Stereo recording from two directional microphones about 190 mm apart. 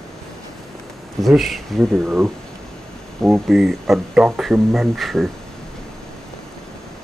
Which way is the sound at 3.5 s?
Centre (ahead or behind).